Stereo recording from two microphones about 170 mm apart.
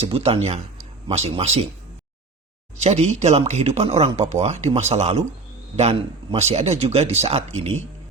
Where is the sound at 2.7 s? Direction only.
40° right (ahead or behind).